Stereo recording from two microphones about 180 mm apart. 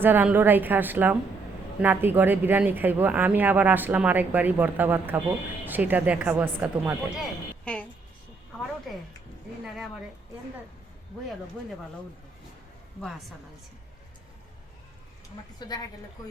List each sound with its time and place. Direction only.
0.0 s speech: 10° right (ahead or behind)
7.6 s a sound: 5° left (ahead or behind)
9.6 s speech: centre (ahead or behind)
15.5 s a woman's voice: 20° left (ahead or behind)